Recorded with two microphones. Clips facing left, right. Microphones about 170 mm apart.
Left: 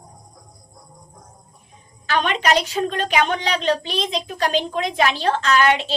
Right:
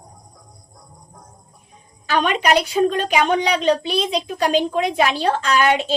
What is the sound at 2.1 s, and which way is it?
A woman's voice, 10° right (ahead or behind).